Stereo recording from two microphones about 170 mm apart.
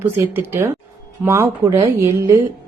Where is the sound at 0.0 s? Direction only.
10° right (ahead or behind).